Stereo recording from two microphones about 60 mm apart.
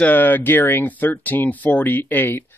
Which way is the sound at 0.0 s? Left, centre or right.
Left.